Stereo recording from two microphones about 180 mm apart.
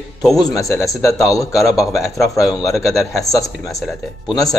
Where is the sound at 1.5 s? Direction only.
Centre (ahead or behind).